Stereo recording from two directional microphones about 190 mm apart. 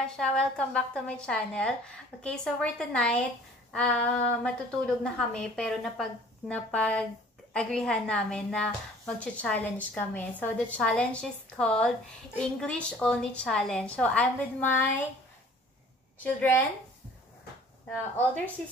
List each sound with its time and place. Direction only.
0.1 s a woman's voice: 5° left (ahead or behind)
16.2 s a woman's voice: 10° left (ahead or behind)